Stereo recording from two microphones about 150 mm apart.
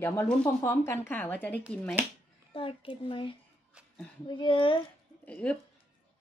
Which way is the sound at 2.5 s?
35° left (ahead or behind).